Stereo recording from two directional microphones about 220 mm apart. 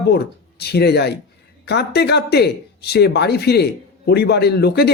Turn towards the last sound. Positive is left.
turn(degrees=45)  # may be behind; listen again after turning